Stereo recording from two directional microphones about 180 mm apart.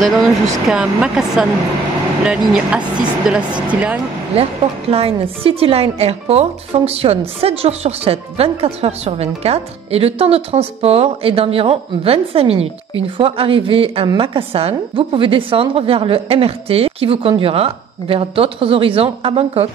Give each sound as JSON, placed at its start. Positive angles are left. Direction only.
{"t": 0.7, "sound": "a woman's voice", "side_deg": -5}
{"t": 4.4, "sound": "a woman's voice", "side_deg": -35}